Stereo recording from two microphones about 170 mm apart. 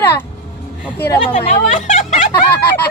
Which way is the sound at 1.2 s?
40° left (ahead or behind).